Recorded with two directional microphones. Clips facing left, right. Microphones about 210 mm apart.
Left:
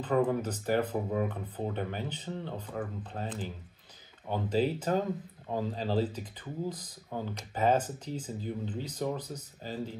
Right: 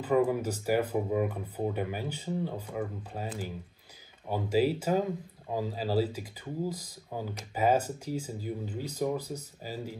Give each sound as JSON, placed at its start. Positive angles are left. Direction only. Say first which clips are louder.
{"t": 0.0, "sound": "speech", "louder": "right 2 dB", "side_deg": -10}